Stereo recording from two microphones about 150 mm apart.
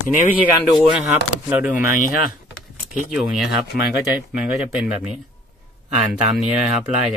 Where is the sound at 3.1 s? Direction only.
Centre (ahead or behind).